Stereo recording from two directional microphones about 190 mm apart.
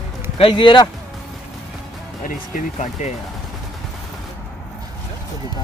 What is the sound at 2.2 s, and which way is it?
Speech, 40° left (ahead or behind).